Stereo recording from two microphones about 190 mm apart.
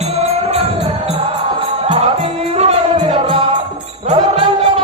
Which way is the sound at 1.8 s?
35° right (ahead or behind).